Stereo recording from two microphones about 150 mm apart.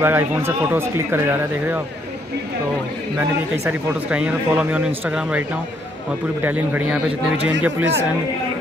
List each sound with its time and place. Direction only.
0.0 s speech: 15° right (ahead or behind)
3.2 s speech: 10° right (ahead or behind)
6.4 s speech: 10° right (ahead or behind)